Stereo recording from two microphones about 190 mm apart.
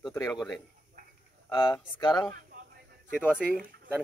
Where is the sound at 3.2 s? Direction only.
10° left (ahead or behind).